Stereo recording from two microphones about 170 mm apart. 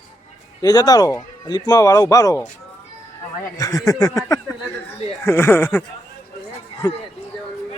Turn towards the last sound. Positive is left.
turn(degrees=20)  # may be behind; listen again after turning